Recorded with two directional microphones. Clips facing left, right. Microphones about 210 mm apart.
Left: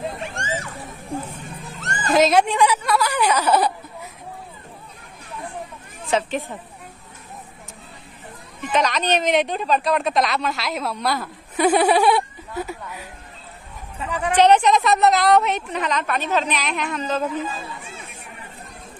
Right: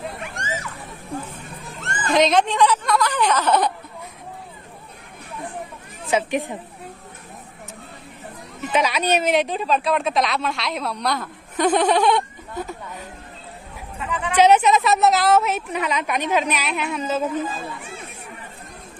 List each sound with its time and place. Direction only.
0.2 s a sound: 30° left (ahead or behind)
1.8 s cat: 40° left (ahead or behind)
2.1 s a woman's voice: 5° left (ahead or behind)
6.0 s a woman's voice: 15° right (ahead or behind)
8.7 s a woman's voice: 10° right (ahead or behind); by 13.0 s 10° left (ahead or behind)
14.0 s a woman's voice: 40° left (ahead or behind)
14.3 s a woman's voice: 10° right (ahead or behind)